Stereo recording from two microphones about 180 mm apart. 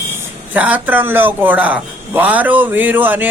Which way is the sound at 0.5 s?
10° right (ahead or behind).